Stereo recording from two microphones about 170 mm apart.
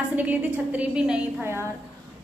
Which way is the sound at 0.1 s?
10° right (ahead or behind).